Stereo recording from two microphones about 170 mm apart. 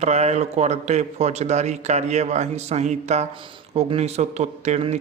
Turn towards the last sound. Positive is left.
turn(degrees=-40)  # may be behind; listen again after turning